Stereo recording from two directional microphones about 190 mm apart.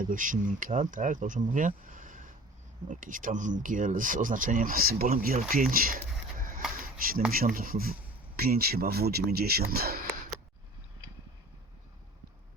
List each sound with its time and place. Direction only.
0.1 s speech: 45° right (ahead or behind)
7.3 s speech: 50° right (ahead or behind)